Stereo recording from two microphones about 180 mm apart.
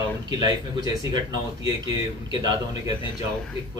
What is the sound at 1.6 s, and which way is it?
Speech, 25° right (ahead or behind).